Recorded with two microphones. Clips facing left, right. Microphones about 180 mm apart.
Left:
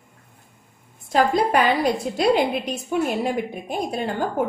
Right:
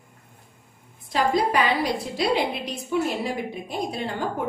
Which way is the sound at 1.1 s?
50° left (ahead or behind).